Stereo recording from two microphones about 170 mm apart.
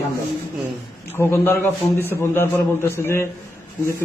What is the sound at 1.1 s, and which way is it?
Speech, 15° left (ahead or behind).